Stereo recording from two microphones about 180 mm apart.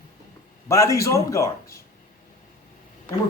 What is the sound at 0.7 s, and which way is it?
Speech, 15° left (ahead or behind).